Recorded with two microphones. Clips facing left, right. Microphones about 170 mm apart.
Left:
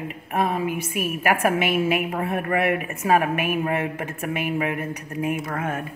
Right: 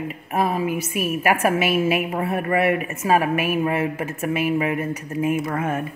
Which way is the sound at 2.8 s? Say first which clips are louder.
Right 1 dB; 5° right (ahead or behind).